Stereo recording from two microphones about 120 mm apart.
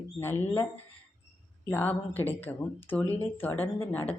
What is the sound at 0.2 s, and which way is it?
A man's voice, 20° left (ahead or behind).